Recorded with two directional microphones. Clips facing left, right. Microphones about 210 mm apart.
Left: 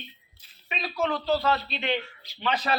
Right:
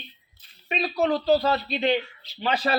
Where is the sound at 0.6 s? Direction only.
40° right (ahead or behind).